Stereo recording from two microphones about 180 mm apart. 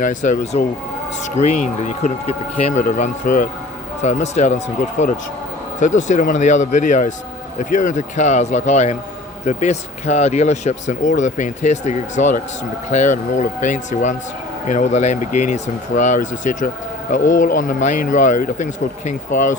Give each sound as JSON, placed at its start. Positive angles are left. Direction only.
{"t": 0.0, "sound": "speech", "side_deg": 45}